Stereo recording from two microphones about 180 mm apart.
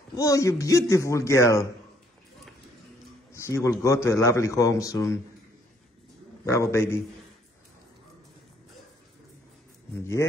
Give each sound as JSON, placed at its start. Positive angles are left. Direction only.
{"t": 0.1, "sound": "a man's voice", "side_deg": 20}
{"t": 3.3, "sound": "a man's voice", "side_deg": 15}
{"t": 6.4, "sound": "a man's voice", "side_deg": 15}